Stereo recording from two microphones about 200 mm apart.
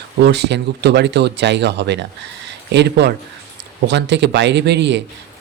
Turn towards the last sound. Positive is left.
turn(degrees=-60)  # may be behind; listen again after turning